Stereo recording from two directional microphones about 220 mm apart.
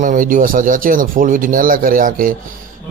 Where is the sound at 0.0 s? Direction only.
35° right (ahead or behind).